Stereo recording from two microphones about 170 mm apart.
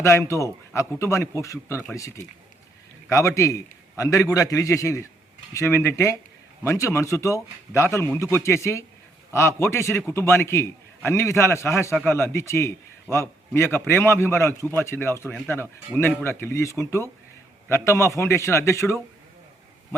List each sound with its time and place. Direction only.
0.0 s a man's voice: 15° left (ahead or behind)